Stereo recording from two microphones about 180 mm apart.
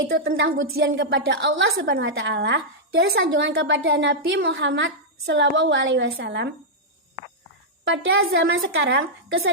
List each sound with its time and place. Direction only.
0.1 s a woman's voice: 90° right
7.9 s a woman's voice: 90° right